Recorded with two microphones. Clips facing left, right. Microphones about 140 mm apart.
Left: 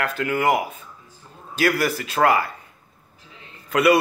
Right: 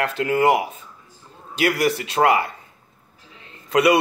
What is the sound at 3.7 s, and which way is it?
Speech, 25° right (ahead or behind).